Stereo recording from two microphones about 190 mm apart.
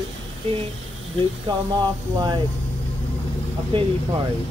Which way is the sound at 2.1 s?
20° right (ahead or behind).